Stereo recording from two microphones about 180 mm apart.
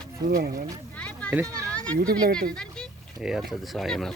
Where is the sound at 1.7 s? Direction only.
5° left (ahead or behind).